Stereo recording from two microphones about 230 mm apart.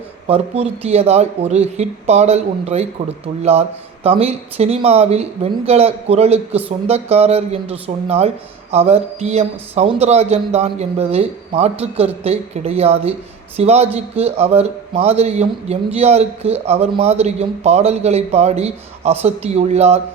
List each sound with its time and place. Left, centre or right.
0.3 s a man's voice: right